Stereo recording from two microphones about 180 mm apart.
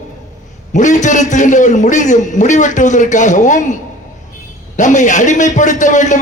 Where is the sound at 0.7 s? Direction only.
45° left (ahead or behind).